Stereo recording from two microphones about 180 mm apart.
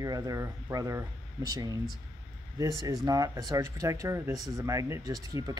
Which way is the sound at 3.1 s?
20° right (ahead or behind).